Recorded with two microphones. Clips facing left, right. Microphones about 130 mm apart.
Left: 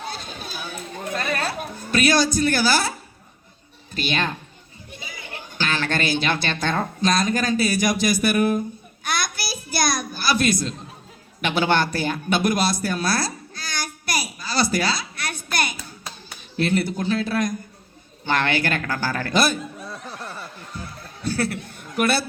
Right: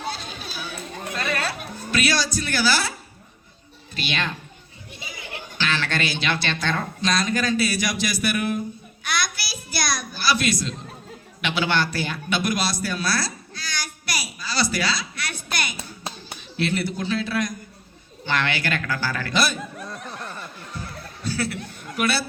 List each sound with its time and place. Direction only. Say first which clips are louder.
0.1 s music: even; 50° left (ahead or behind)
3.9 s a man's voice: left 3 dB; 45° left (ahead or behind)
9.0 s a sound: left 1 dB; 50° left (ahead or behind)
15.8 s hands: right 3 dB; 25° right (ahead or behind)
16.6 s a man's voice: left 3 dB; 50° left (ahead or behind)
19.8 s snicker: even; 5° left (ahead or behind)
21.2 s a man's voice: left 3 dB; 55° left (ahead or behind)